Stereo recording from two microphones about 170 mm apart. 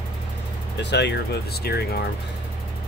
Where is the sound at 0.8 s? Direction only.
90° left.